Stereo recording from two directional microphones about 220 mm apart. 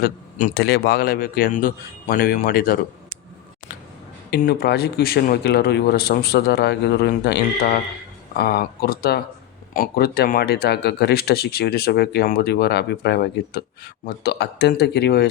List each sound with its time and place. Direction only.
0.0 s a man's voice: 40° left (ahead or behind)
4.3 s speech: 45° left (ahead or behind)